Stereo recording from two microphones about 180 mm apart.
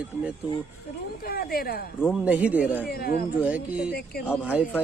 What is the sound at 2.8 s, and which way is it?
Speech, 60° left (ahead or behind).